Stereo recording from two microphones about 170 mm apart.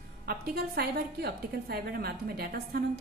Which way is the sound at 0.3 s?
65° right (ahead or behind).